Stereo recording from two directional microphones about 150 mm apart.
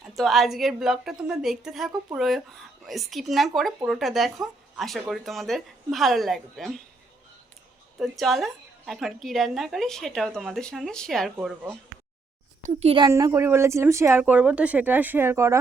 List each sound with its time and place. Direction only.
0.0 s a woman's voice: centre (ahead or behind)
7.9 s a woman's voice: centre (ahead or behind)
12.6 s a child's voice: 40° right (ahead or behind)
13.1 s speech: 20° right (ahead or behind)